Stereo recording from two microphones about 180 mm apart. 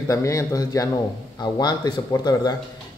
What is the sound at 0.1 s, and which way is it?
Speech, 15° left (ahead or behind).